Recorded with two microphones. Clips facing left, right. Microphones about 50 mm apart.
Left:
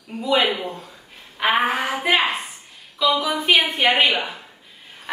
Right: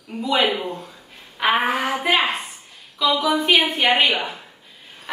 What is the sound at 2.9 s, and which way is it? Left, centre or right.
A woman's voice, centre.